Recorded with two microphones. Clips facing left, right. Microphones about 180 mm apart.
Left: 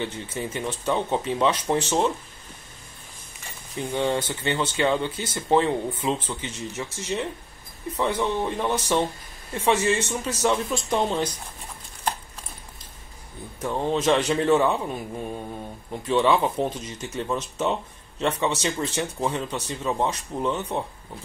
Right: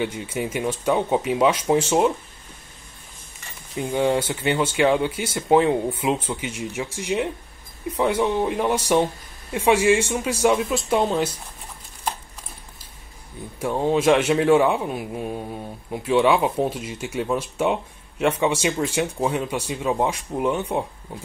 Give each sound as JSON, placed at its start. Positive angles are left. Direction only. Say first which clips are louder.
{"t": 0.0, "sound": "a man's voice", "louder": "right 4 dB", "side_deg": -10}
{"t": 3.7, "sound": "a man's voice", "louder": "right 4 dB", "side_deg": -10}
{"t": 13.6, "sound": "a man's voice", "louder": "right 4 dB", "side_deg": -10}